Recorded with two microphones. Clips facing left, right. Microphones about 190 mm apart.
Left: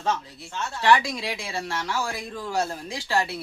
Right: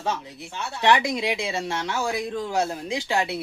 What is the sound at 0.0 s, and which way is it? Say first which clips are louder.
Speech: left 1 dB; 15° right (ahead or behind).